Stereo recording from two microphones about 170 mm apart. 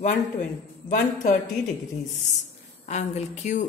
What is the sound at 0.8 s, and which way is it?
Speech, 50° left (ahead or behind).